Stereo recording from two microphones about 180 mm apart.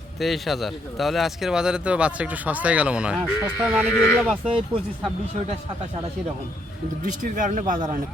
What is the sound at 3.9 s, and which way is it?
Speech, 15° left (ahead or behind).